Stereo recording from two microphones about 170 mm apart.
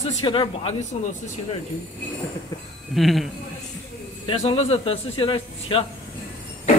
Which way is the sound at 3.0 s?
Centre (ahead or behind).